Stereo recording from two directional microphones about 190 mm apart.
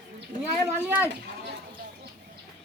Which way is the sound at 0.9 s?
10° right (ahead or behind).